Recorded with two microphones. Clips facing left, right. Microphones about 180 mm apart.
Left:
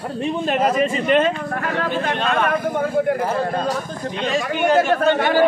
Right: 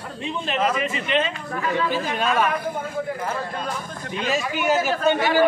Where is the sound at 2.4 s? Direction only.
65° left (ahead or behind).